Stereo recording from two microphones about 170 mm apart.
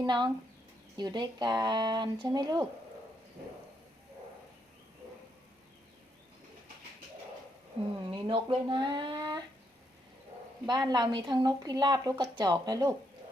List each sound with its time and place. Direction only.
0.0 s speech: 25° right (ahead or behind)
8.1 s speech: 30° right (ahead or behind)
10.7 s speech: 25° right (ahead or behind)